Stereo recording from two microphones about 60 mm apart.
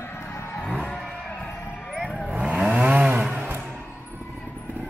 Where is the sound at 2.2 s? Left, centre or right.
Right.